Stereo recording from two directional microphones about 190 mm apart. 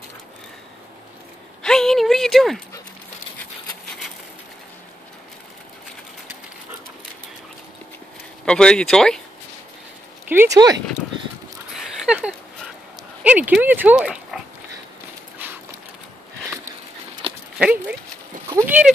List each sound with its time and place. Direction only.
1.6 s a sound: 5° left (ahead or behind)
8.5 s speech: 5° left (ahead or behind)
10.2 s speech: 10° right (ahead or behind)
12.1 s a sound: 5° right (ahead or behind)
13.2 s speech: 10° right (ahead or behind)
17.6 s speech: 5° right (ahead or behind)